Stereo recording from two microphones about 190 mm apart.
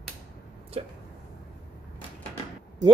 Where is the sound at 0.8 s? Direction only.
35° right (ahead or behind).